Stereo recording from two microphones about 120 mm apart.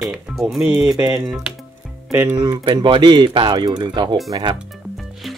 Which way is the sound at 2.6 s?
45° right (ahead or behind).